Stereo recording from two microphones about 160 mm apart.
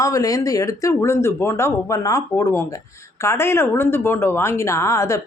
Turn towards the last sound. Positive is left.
turn(degrees=20)  # may be behind; listen again after turning